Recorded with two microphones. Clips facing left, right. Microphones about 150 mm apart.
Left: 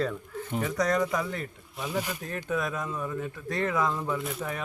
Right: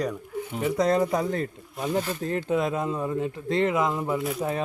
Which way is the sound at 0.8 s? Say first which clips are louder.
Right 4 dB; 30° right (ahead or behind).